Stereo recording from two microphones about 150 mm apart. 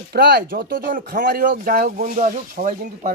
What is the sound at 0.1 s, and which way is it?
Speech, 85° right.